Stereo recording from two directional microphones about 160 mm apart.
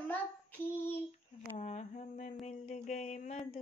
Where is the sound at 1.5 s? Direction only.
45° left (ahead or behind).